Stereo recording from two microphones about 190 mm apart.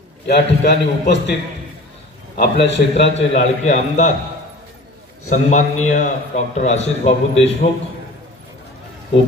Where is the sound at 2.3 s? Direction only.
65° left (ahead or behind).